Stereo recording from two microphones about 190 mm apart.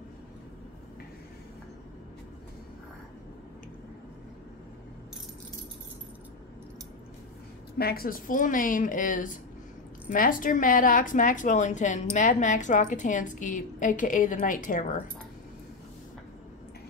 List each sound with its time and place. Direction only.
7.7 s a woman's voice: 55° left (ahead or behind)